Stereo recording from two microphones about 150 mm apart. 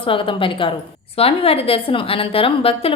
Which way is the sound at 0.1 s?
35° left (ahead or behind).